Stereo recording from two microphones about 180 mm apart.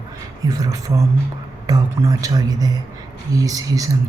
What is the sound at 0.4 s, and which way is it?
Speech, 20° right (ahead or behind).